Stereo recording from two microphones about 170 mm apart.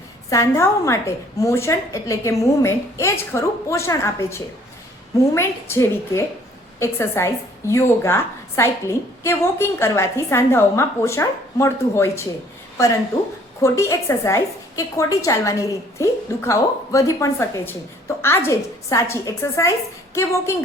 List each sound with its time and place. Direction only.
0.3 s a woman's voice: 15° left (ahead or behind)
13.6 s a woman's voice: 15° left (ahead or behind)